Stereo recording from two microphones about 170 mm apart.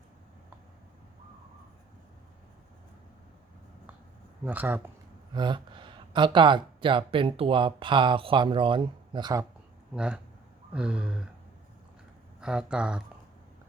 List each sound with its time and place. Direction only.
4.4 s speech: 10° right (ahead or behind)
5.3 s speech: 25° right (ahead or behind)
9.9 s speech: 5° right (ahead or behind)
12.4 s speech: 5° right (ahead or behind)